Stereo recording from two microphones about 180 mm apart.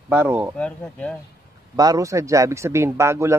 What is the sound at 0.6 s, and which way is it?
Speech, 5° left (ahead or behind).